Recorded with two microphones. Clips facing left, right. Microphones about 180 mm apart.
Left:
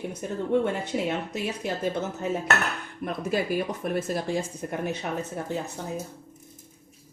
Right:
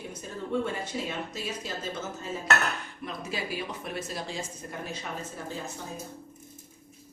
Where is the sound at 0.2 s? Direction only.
65° left (ahead or behind).